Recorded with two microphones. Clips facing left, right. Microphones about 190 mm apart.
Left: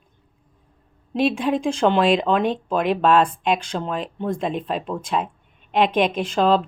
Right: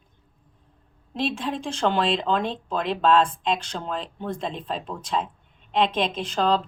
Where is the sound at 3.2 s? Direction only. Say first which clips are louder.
Left 4 dB; 65° left (ahead or behind).